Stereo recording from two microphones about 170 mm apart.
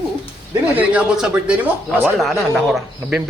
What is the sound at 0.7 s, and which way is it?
A man's voice, 5° right (ahead or behind).